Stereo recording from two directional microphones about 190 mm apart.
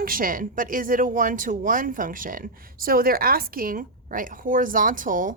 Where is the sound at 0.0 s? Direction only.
50° right (ahead or behind).